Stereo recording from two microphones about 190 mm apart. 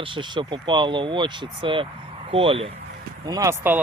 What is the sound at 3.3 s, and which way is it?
Speech, 20° right (ahead or behind).